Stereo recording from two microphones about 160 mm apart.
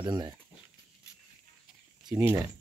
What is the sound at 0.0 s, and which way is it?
Speech, 25° right (ahead or behind).